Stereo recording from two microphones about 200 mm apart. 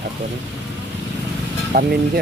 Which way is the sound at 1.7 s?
50° right (ahead or behind).